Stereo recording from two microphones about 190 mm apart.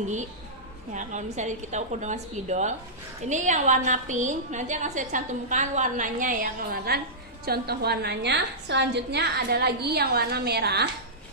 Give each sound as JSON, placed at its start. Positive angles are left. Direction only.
{"t": 0.9, "sound": "a woman's voice", "side_deg": -40}